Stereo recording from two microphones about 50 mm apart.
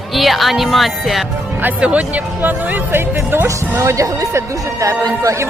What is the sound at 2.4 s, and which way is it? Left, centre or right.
Speech, right.